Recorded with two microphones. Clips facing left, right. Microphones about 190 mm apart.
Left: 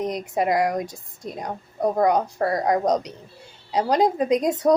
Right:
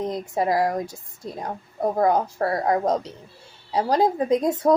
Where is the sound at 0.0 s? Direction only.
20° left (ahead or behind).